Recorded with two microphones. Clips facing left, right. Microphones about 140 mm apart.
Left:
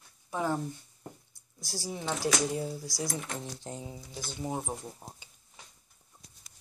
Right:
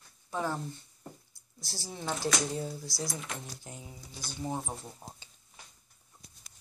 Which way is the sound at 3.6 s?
30° left (ahead or behind).